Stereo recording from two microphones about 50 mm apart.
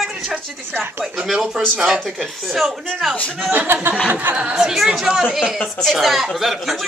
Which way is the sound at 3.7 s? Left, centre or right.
Right.